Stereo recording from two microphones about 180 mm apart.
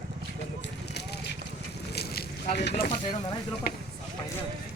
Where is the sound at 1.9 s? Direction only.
60° left (ahead or behind).